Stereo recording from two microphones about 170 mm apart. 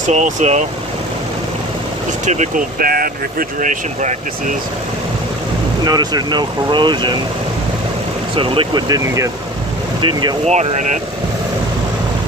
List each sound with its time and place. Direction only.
0.0 s speech: 45° right (ahead or behind)
2.2 s speech: 45° right (ahead or behind)
5.9 s speech: 25° right (ahead or behind)
8.4 s speech: 30° right (ahead or behind)
10.4 s speech: 40° right (ahead or behind)